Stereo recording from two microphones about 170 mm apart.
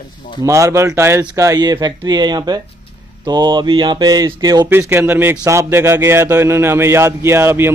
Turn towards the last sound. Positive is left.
turn(degrees=-15)  # may be behind; listen again after turning